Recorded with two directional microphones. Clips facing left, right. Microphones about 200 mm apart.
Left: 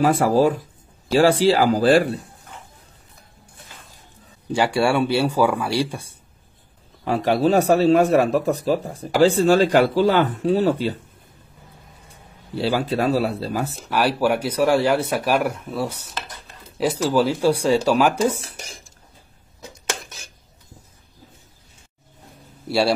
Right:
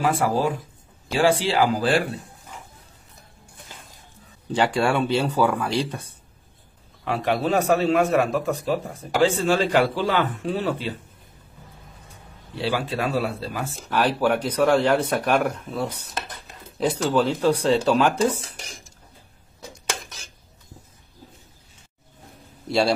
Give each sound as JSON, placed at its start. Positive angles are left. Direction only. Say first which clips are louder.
{"t": 0.0, "sound": "a man's voice", "louder": "left 5 dB", "side_deg": 40}
{"t": 4.5, "sound": "speech", "louder": "left 2 dB", "side_deg": 10}
{"t": 7.1, "sound": "a man's voice", "louder": "left 4 dB", "side_deg": 35}
{"t": 12.5, "sound": "a man's voice", "louder": "left 4 dB", "side_deg": 40}
{"t": 13.8, "sound": "speech", "louder": "left 1 dB", "side_deg": 10}
{"t": 22.7, "sound": "speech", "louder": "left 1 dB", "side_deg": 5}